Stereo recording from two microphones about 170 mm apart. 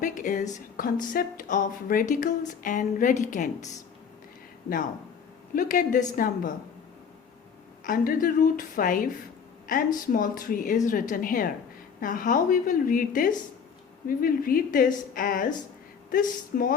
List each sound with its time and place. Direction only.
0.0 s a woman's voice: 50° left (ahead or behind)
5.5 s a woman's voice: 50° left (ahead or behind)
7.9 s a woman's voice: 55° left (ahead or behind)